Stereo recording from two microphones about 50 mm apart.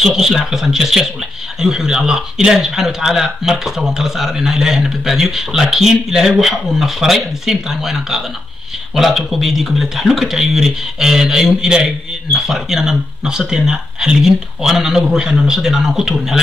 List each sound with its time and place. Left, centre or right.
0.0 s a man's voice: centre